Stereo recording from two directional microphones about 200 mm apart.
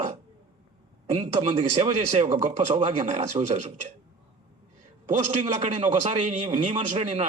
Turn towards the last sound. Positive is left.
turn(degrees=-35)  # may be behind; listen again after turning